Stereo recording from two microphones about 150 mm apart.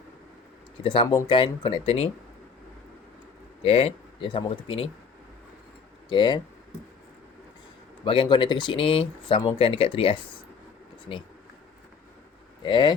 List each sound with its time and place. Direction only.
0.8 s speech: 40° left (ahead or behind)
3.6 s speech: 45° left (ahead or behind)
6.1 s speech: 30° left (ahead or behind)
8.0 s speech: 35° left (ahead or behind)
12.6 s speech: 30° left (ahead or behind)